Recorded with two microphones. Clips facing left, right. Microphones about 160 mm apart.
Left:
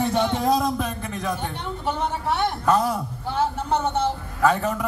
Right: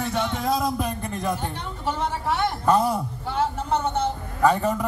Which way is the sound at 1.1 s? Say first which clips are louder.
Right 1 dB; centre (ahead or behind).